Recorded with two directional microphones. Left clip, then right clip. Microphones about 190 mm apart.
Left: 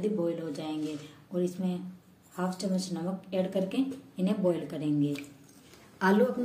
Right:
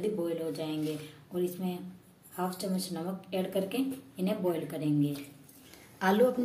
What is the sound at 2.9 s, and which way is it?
A woman's voice, 45° left (ahead or behind).